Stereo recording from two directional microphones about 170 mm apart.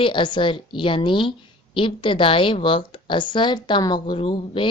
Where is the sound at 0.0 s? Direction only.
30° left (ahead or behind).